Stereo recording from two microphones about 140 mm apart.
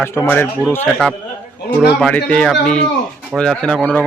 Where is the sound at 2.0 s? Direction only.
5° left (ahead or behind).